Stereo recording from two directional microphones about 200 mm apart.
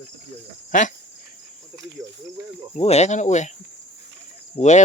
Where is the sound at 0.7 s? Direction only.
40° left (ahead or behind).